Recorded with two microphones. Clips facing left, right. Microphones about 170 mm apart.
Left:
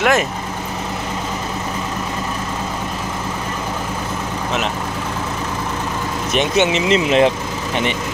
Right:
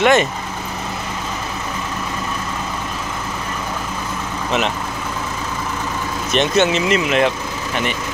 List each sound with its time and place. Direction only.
0.0 s speech: 5° left (ahead or behind)
6.3 s speech: 15° left (ahead or behind)
6.9 s speech: 30° left (ahead or behind)